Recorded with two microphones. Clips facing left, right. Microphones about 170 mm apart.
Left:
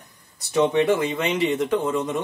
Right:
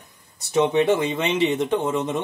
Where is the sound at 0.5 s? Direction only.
25° right (ahead or behind).